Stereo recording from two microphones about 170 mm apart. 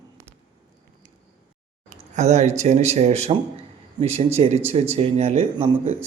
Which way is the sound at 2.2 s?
40° right (ahead or behind).